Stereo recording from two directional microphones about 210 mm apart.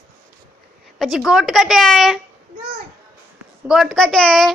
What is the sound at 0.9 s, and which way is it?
Speech, centre (ahead or behind).